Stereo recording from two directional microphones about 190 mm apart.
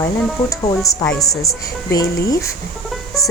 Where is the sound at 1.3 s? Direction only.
15° left (ahead or behind).